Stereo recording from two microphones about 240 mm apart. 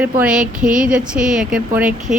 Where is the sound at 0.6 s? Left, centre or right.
Right.